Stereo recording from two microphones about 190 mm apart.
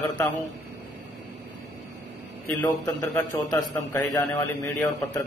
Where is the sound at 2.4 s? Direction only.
20° left (ahead or behind).